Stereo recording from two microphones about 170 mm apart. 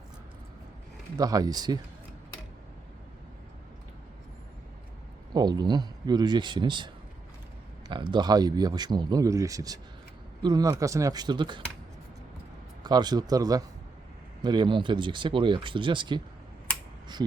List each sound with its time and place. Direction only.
1.1 s speech: 20° right (ahead or behind)
5.3 s speech: 25° right (ahead or behind)
8.1 s speech: 25° right (ahead or behind)
12.8 s speech: 25° right (ahead or behind)